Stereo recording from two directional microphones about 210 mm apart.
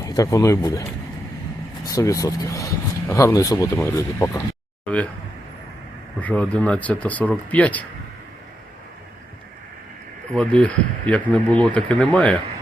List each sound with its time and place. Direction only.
0.0 s speech: 15° left (ahead or behind)
6.1 s speech: 5° left (ahead or behind)
10.3 s speech: 5° left (ahead or behind)